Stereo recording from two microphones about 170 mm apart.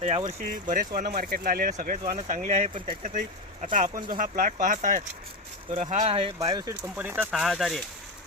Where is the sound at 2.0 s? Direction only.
40° right (ahead or behind).